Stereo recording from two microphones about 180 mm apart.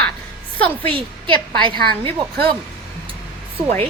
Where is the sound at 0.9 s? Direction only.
30° right (ahead or behind).